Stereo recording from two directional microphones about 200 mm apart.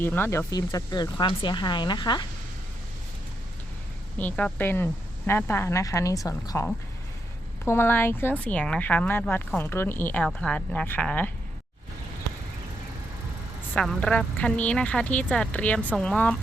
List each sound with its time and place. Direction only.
0.0 s speech: 10° left (ahead or behind)
4.2 s speech: 10° left (ahead or behind)
13.7 s speech: centre (ahead or behind)